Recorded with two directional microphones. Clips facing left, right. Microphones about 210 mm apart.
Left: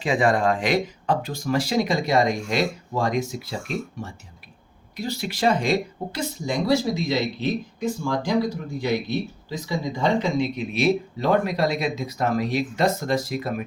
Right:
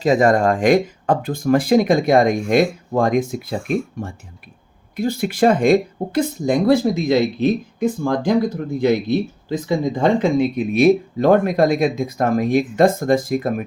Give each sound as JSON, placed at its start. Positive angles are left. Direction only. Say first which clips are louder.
{"t": 0.0, "sound": "speech", "louder": "right 6 dB", "side_deg": -40}